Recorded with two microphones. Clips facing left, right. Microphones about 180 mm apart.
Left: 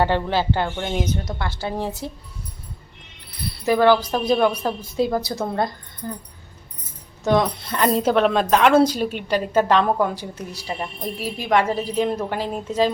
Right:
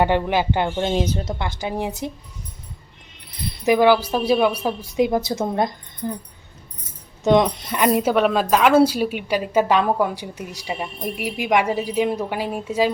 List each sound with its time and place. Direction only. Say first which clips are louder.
0.0 s a woman's voice: right 1 dB; 15° right (ahead or behind)
1.4 s a woman's voice: right 1 dB; 15° right (ahead or behind)
3.7 s a woman's voice: right 1 dB; 10° right (ahead or behind)
7.3 s a woman's voice: right 3 dB; 20° right (ahead or behind)